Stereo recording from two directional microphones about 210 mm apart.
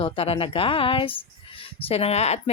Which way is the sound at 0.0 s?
25° left (ahead or behind).